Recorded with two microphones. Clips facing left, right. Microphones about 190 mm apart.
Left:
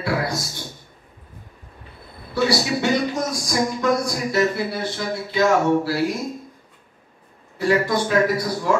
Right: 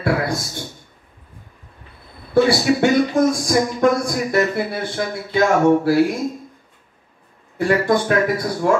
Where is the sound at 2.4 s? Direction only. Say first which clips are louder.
Right 4 dB; 55° right (ahead or behind).